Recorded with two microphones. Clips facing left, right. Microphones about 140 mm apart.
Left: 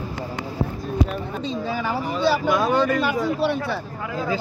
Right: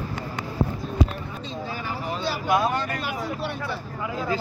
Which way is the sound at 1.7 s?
90° left.